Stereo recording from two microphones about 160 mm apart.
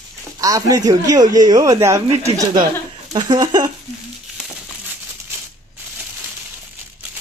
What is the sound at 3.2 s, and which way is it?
Speech, 25° right (ahead or behind).